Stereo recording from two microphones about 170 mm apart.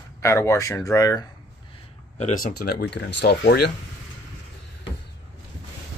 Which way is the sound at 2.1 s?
40° left (ahead or behind).